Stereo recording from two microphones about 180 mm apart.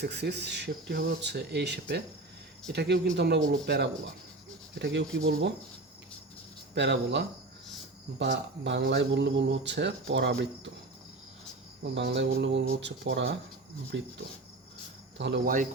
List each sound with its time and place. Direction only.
0.0 s speech: 65° right (ahead or behind)
4.8 s speech: 80° right
6.7 s speech: 75° right (ahead or behind)
11.8 s speech: 70° right (ahead or behind)
15.2 s speech: 85° right